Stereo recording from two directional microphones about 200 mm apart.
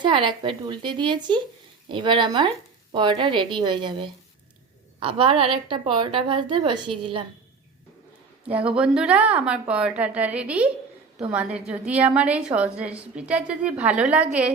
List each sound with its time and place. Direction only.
0.0 s a woman's voice: 25° right (ahead or behind)
8.4 s a woman's voice: 5° right (ahead or behind)